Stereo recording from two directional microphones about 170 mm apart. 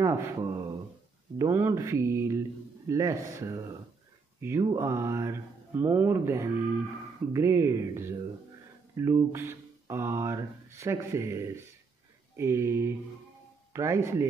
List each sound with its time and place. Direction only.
0.0 s speech: 15° right (ahead or behind)